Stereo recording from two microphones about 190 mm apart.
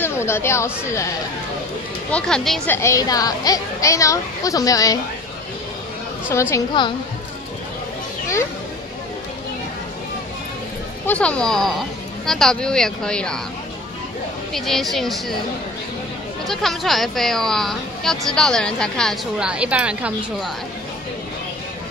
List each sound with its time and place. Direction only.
0.0 s speech: 15° left (ahead or behind)
2.0 s a woman's voice: 5° left (ahead or behind)
6.5 s a woman's voice: 25° left (ahead or behind)
11.1 s speech: 5° left (ahead or behind)
14.5 s speech: centre (ahead or behind)
16.4 s speech: centre (ahead or behind)